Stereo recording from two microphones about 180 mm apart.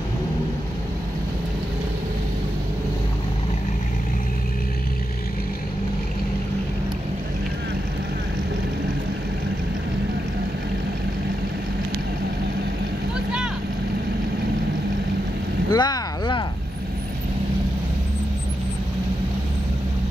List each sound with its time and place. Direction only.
15.7 s vehicle: 25° left (ahead or behind)